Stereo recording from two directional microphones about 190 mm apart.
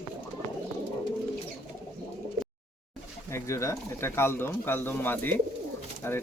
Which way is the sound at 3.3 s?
15° left (ahead or behind).